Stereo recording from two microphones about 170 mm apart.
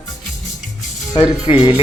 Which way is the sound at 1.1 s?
25° left (ahead or behind).